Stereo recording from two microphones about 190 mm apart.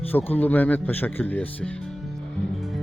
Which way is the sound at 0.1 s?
10° left (ahead or behind).